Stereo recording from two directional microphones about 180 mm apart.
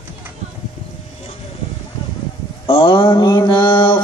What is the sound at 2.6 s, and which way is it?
Mantra, 25° left (ahead or behind).